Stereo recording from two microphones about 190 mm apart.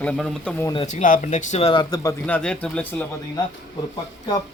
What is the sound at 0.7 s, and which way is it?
Speech, 40° left (ahead or behind).